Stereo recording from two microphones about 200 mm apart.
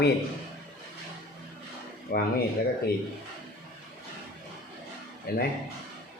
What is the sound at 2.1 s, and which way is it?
Speech, 45° left (ahead or behind).